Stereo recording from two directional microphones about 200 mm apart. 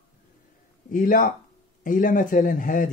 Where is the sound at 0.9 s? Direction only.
45° left (ahead or behind).